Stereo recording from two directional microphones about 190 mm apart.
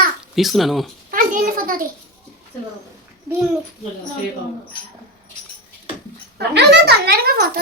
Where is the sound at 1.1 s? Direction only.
45° right (ahead or behind).